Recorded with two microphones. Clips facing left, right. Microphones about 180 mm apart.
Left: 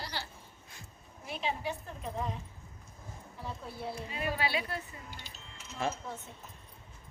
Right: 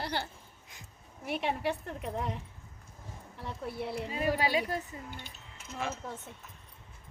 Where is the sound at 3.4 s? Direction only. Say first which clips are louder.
Right 3 dB; 70° right (ahead or behind).